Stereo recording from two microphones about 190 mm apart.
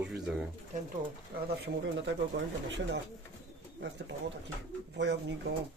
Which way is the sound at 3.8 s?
70° right (ahead or behind).